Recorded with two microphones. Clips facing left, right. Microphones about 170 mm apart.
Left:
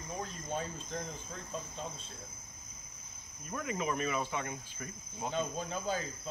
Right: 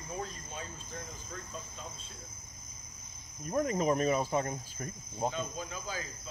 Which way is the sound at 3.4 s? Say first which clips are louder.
Right 7 dB; 40° right (ahead or behind).